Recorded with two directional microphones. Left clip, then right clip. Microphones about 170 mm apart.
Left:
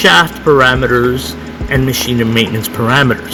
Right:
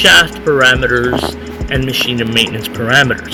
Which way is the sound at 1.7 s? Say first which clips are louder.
Even; 40° left (ahead or behind).